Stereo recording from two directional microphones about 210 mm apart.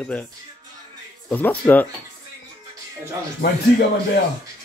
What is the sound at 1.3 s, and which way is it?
Speech, 10° left (ahead or behind).